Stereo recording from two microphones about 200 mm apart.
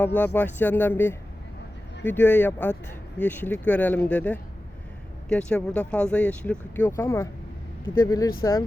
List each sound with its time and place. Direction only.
0.0 s speech: 10° left (ahead or behind)